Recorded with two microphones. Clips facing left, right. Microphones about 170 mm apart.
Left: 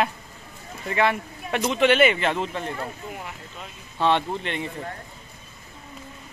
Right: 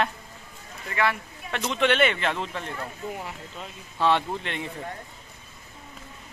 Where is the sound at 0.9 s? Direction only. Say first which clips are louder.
Left 4 dB; 20° left (ahead or behind).